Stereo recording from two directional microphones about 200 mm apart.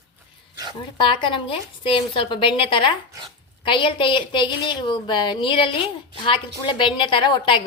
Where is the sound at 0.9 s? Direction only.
25° left (ahead or behind).